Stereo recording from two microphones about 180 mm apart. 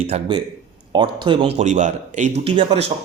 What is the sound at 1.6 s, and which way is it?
Speech, 40° right (ahead or behind).